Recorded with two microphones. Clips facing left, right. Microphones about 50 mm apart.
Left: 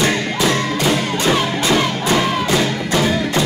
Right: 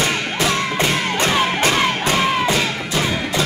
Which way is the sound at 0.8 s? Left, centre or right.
Right.